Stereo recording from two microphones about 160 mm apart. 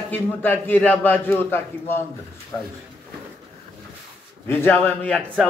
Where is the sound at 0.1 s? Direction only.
10° left (ahead or behind).